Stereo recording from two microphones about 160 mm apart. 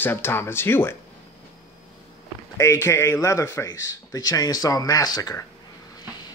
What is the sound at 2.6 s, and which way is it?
Speech, 15° left (ahead or behind).